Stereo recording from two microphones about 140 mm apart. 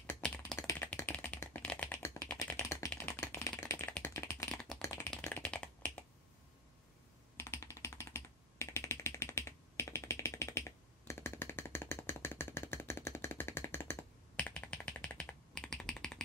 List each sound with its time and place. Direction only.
0.2 s typing: 5° left (ahead or behind)
3.0 s a sound: 20° left (ahead or behind)
5.1 s typing: 5° left (ahead or behind)
7.3 s computer keyboard: 20° left (ahead or behind); by 16.2 s 5° left (ahead or behind)